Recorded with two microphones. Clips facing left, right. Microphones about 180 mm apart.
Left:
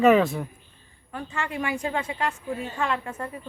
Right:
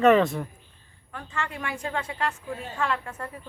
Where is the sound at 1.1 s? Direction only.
15° left (ahead or behind).